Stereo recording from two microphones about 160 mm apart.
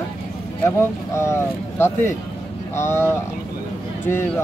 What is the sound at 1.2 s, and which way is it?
Speech, 15° left (ahead or behind).